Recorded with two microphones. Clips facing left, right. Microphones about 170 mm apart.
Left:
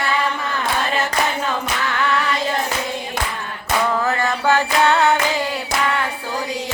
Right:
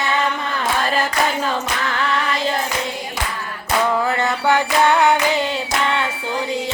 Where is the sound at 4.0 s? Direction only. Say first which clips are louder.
Even; 15° right (ahead or behind).